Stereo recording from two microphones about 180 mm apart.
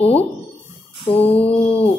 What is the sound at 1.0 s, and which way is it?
Lullaby, 35° left (ahead or behind).